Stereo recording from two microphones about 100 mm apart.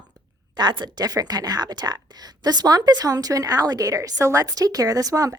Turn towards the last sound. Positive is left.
turn(degrees=-35)  # may be behind; listen again after turning